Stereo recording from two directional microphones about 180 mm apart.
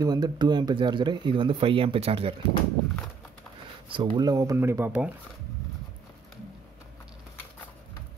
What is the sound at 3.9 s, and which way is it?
Speech, 25° right (ahead or behind).